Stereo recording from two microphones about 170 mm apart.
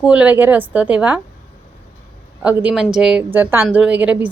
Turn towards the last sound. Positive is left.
turn(degrees=-10)  # may be behind; listen again after turning